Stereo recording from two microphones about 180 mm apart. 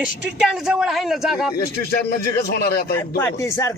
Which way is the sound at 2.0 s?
60° left (ahead or behind).